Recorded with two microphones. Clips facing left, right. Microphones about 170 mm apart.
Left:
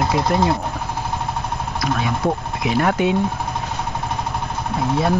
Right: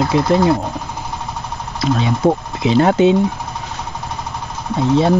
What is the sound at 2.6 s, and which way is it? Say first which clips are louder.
Speech: right 6 dB; 25° right (ahead or behind).